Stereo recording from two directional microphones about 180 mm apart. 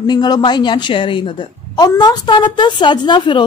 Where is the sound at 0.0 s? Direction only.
25° left (ahead or behind).